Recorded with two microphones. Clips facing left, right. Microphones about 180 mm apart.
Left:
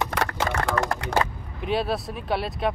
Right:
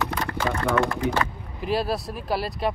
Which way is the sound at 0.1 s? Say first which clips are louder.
Even; 75° left (ahead or behind).